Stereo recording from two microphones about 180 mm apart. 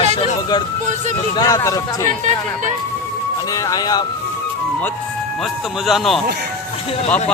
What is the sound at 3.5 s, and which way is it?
Speech, 20° left (ahead or behind).